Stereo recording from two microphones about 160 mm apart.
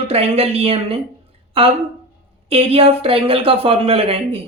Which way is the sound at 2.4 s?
35° right (ahead or behind).